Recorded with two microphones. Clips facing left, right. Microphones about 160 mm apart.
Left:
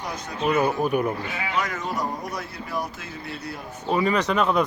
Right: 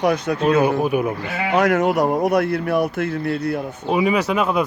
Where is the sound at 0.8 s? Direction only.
5° right (ahead or behind).